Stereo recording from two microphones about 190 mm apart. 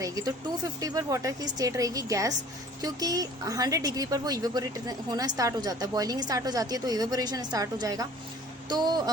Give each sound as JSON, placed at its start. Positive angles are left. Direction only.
{"t": 0.0, "sound": "a woman's voice", "side_deg": -20}